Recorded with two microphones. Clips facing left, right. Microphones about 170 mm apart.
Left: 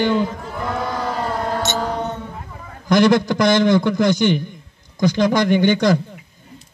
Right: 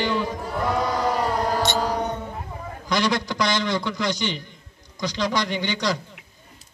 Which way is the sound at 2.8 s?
50° left (ahead or behind).